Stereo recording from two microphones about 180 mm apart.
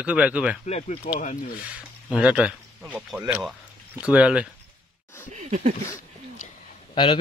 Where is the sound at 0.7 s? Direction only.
35° left (ahead or behind).